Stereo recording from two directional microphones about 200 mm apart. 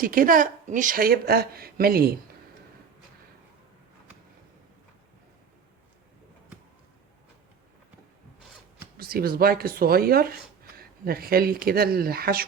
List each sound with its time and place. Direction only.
0.0 s speech: 45° right (ahead or behind)
9.0 s speech: 50° right (ahead or behind)